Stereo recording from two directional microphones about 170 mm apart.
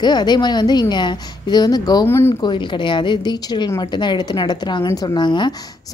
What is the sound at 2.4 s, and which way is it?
A woman's voice, 30° left (ahead or behind).